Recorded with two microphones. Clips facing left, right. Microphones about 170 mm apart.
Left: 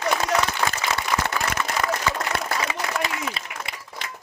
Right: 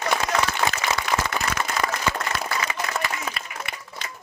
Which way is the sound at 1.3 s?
20° right (ahead or behind).